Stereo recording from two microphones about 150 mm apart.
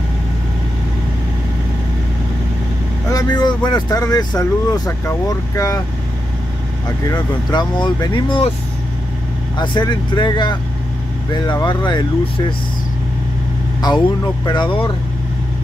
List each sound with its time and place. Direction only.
3.1 s speech: 25° left (ahead or behind)
7.1 s speech: 30° left (ahead or behind)
9.6 s speech: 30° left (ahead or behind)
11.6 s speech: 30° left (ahead or behind)
13.7 s speech: 25° left (ahead or behind)